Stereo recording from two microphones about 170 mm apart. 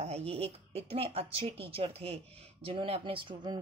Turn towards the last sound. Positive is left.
turn(degrees=-25)  # may be behind; listen again after turning